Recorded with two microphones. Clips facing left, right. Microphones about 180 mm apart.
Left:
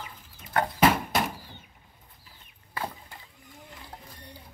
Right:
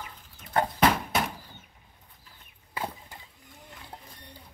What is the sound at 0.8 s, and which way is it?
Horse, centre (ahead or behind).